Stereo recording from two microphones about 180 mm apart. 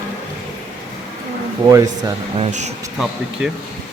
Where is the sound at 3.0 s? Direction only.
5° right (ahead or behind).